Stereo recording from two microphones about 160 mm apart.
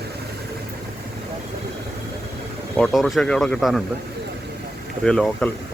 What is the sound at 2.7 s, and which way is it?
Speech, centre (ahead or behind).